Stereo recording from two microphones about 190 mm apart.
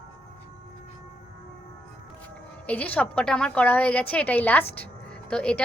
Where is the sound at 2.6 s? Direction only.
10° left (ahead or behind).